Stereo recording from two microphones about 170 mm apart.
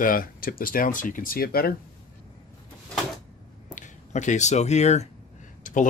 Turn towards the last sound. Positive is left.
turn(degrees=50)  # may be behind; listen again after turning